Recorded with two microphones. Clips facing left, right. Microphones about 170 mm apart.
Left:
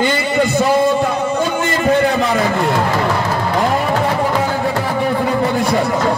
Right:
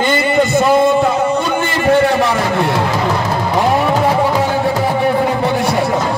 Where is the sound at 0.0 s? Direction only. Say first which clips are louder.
Right 2 dB; 55° right (ahead or behind).